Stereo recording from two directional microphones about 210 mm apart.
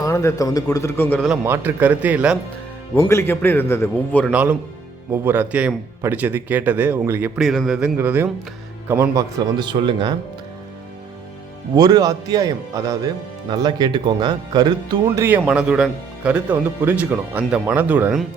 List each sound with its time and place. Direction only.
0.0 s a man's voice: 15° left (ahead or behind)
1.5 s speech: 10° right (ahead or behind)
2.9 s a man's voice: 10° left (ahead or behind)
4.3 s speech: 5° right (ahead or behind)
11.8 s speech: 20° right (ahead or behind); by 18.3 s 5° right (ahead or behind)